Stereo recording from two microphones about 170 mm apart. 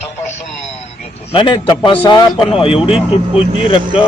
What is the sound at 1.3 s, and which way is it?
Speech, 30° left (ahead or behind).